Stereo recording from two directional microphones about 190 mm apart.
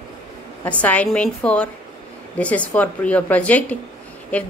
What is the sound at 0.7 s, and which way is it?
Speech, 5° left (ahead or behind).